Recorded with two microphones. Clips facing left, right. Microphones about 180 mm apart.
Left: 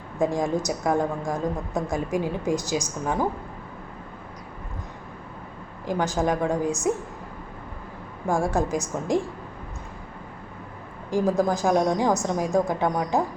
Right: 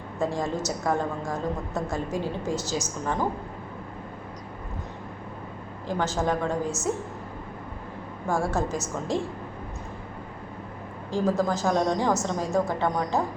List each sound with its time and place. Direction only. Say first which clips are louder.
0.2 s a woman's voice: left 4 dB; 15° left (ahead or behind)
5.8 s a woman's voice: left 2 dB; 15° left (ahead or behind)
8.3 s a woman's voice: left 3 dB; 15° left (ahead or behind)
11.1 s a woman's voice: left 2 dB; 15° left (ahead or behind)